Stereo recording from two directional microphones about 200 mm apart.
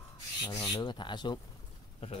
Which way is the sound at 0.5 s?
20° left (ahead or behind).